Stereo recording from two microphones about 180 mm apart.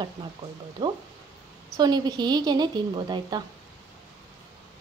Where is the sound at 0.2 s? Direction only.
25° right (ahead or behind).